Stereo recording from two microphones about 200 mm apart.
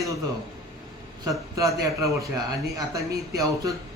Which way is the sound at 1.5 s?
15° right (ahead or behind).